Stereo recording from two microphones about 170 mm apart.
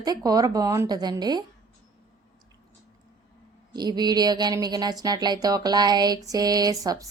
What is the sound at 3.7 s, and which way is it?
Speech, 25° right (ahead or behind).